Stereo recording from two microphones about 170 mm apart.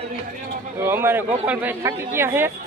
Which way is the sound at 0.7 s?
15° right (ahead or behind).